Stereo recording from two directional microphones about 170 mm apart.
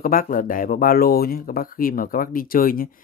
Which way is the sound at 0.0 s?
55° left (ahead or behind).